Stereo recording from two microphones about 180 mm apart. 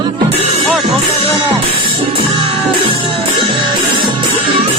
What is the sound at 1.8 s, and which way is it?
Music, 30° right (ahead or behind).